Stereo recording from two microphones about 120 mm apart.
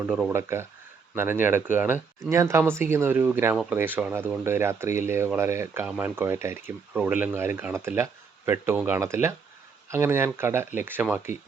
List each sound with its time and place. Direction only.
0.1 s speech: 5° right (ahead or behind)
0.3 s speech: 20° right (ahead or behind)